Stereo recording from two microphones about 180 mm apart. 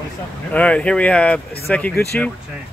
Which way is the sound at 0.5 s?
5° left (ahead or behind).